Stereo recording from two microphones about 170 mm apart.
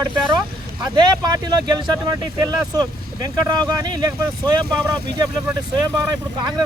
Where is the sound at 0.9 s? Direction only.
25° right (ahead or behind).